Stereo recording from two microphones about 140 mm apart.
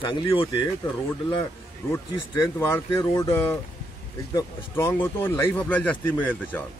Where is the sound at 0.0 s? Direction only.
35° left (ahead or behind).